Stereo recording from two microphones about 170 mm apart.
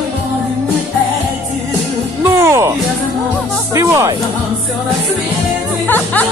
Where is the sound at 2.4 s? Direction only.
15° right (ahead or behind).